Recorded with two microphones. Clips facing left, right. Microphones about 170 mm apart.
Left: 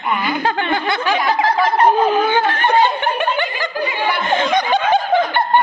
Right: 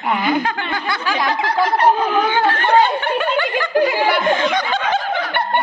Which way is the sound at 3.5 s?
75° right (ahead or behind).